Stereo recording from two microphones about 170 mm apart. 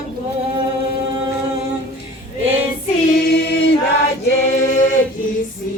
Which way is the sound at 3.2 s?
80° left.